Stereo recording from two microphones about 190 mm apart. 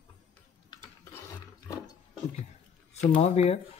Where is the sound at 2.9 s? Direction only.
35° left (ahead or behind).